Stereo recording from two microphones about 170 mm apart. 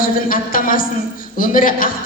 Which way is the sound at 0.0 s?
55° left (ahead or behind).